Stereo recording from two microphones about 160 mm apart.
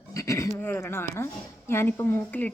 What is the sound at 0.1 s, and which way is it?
Speech, 20° left (ahead or behind).